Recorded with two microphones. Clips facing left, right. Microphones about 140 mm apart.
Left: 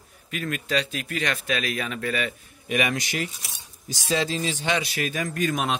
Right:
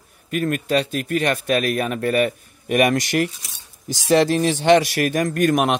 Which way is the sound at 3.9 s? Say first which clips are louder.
Right 9 dB; 70° right (ahead or behind).